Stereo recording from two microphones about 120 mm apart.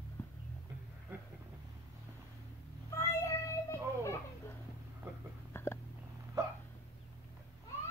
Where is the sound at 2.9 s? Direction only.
25° left (ahead or behind).